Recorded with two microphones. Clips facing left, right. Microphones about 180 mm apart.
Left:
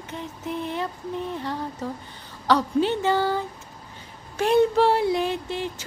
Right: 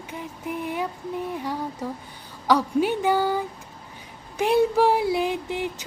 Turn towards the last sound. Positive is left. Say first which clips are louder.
# right 1 dB
turn(degrees=-15)  # may be behind; listen again after turning